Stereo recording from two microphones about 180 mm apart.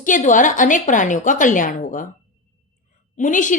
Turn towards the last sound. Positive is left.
turn(degrees=45)  # may be behind; listen again after turning